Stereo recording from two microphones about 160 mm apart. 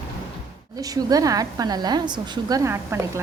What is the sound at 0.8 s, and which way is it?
A woman's voice, 20° right (ahead or behind).